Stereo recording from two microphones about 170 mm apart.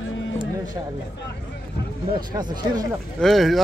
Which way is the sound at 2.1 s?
25° right (ahead or behind).